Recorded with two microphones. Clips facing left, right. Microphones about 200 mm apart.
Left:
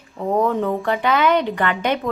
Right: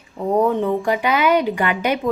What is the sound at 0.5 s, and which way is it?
Speech, centre (ahead or behind).